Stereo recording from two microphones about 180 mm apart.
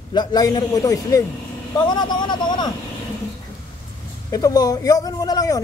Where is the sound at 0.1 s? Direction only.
25° left (ahead or behind).